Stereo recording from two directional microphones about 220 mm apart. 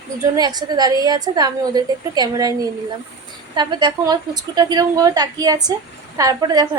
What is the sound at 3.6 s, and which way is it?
A woman's voice, 20° right (ahead or behind).